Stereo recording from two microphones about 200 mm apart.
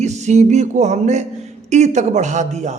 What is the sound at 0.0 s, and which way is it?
A man's voice, 35° right (ahead or behind).